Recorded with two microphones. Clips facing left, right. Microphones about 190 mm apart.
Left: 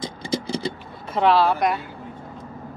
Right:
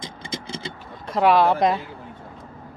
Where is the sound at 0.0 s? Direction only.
35° left (ahead or behind).